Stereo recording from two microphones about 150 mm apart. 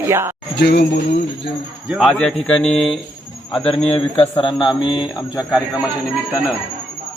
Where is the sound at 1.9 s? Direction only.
Centre (ahead or behind).